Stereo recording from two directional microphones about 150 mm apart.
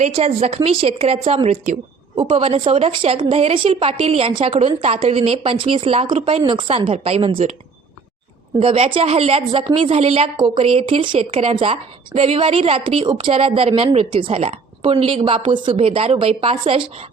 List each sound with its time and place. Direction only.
0.0 s a woman's voice: 40° right (ahead or behind)
8.5 s a woman's voice: 40° right (ahead or behind)